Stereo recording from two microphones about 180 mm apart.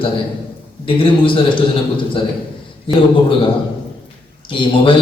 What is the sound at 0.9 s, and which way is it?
A man's voice, 30° left (ahead or behind).